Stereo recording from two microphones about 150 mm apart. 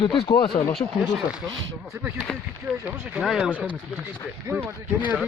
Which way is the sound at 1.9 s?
15° right (ahead or behind).